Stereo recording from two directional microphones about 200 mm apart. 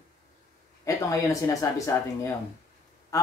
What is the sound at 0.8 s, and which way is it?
Speech, 15° left (ahead or behind).